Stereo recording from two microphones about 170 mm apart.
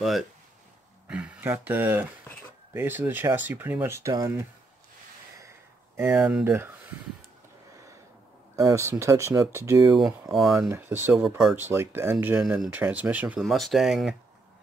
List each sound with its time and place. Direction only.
0.0 s speech: centre (ahead or behind); by 4.5 s 20° right (ahead or behind)
5.9 s speech: 10° right (ahead or behind)
8.5 s speech: 15° right (ahead or behind)
9.9 s speech: 5° right (ahead or behind)
11.1 s speech: centre (ahead or behind)
11.5 s speech: 10° right (ahead or behind)